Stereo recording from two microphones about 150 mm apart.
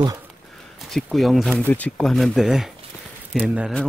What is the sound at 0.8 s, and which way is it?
Speech, centre (ahead or behind).